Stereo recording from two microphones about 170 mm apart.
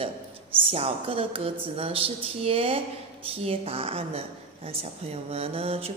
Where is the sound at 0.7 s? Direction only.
35° right (ahead or behind).